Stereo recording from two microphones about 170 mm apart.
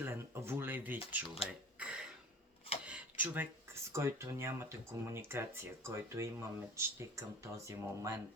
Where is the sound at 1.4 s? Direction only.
5° right (ahead or behind).